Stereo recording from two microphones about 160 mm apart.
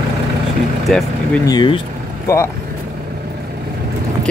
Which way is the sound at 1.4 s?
25° left (ahead or behind).